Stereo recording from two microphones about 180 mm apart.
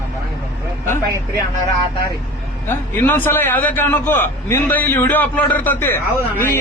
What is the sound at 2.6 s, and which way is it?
A man's voice, 10° left (ahead or behind).